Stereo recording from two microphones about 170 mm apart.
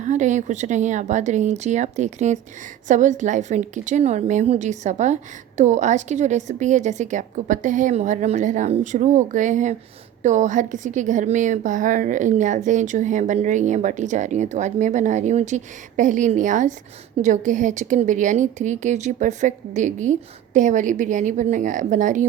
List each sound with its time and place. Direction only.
0.0 s a woman's voice: 45° right (ahead or behind)